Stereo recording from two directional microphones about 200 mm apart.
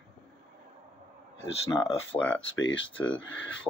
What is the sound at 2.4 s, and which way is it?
Speech, 70° left (ahead or behind).